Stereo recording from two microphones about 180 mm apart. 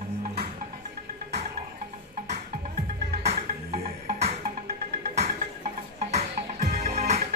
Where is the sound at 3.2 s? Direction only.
35° right (ahead or behind).